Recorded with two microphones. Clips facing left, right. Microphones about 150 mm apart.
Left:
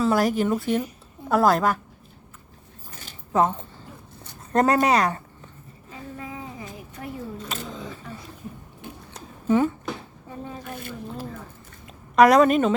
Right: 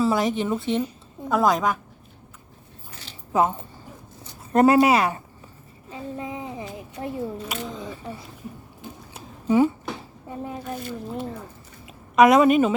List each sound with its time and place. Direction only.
0.0 s speech: centre (ahead or behind)
0.6 s speech: 25° right (ahead or behind)
1.3 s speech: 5° left (ahead or behind)
3.3 s speech: 5° right (ahead or behind)
5.9 s a sound: 20° right (ahead or behind)
9.1 s a sound: 10° right (ahead or behind)
11.9 s a woman's voice: centre (ahead or behind)